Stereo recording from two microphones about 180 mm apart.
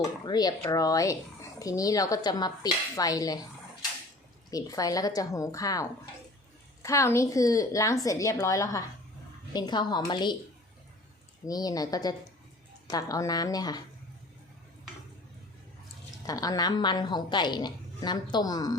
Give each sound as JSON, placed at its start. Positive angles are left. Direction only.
{"t": 0.0, "sound": "a woman's voice", "side_deg": 20}
{"t": 4.5, "sound": "a woman's voice", "side_deg": 20}
{"t": 11.4, "sound": "a woman's voice", "side_deg": 20}
{"t": 16.2, "sound": "a woman's voice", "side_deg": 20}